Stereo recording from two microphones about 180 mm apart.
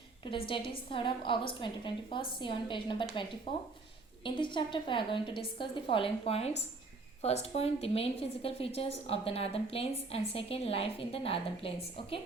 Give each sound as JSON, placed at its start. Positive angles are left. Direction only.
{"t": 0.3, "sound": "a woman's voice", "side_deg": 30}
{"t": 7.5, "sound": "a woman's voice", "side_deg": 35}